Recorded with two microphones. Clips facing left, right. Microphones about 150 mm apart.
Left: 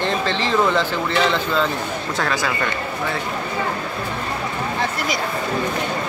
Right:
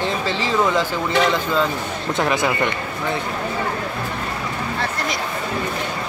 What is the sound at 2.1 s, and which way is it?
Speech, 20° right (ahead or behind).